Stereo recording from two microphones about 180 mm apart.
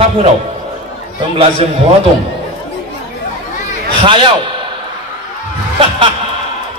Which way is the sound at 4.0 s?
25° right (ahead or behind).